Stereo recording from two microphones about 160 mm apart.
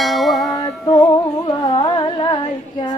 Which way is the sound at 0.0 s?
Centre (ahead or behind).